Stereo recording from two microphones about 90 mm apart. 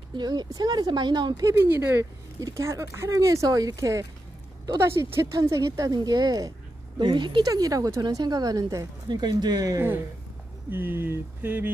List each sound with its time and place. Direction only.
0.1 s speech: 55° right (ahead or behind)
1.4 s speech: 25° right (ahead or behind)
5.9 s speech: 50° right (ahead or behind)
7.0 s speech: 60° right (ahead or behind)
7.4 s speech: 40° right (ahead or behind)
9.1 s speech: 55° right (ahead or behind)
9.8 s speech: 25° right (ahead or behind)